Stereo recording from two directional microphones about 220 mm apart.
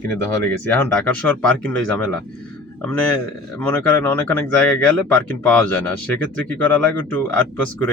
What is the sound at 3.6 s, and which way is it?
Speech, 10° left (ahead or behind).